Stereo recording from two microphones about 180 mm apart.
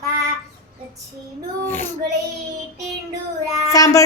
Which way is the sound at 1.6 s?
10° left (ahead or behind).